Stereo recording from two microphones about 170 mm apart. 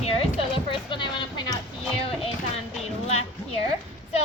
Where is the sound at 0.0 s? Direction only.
35° left (ahead or behind).